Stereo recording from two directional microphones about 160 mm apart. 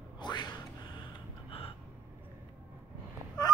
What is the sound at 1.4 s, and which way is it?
Gasp, 35° left (ahead or behind).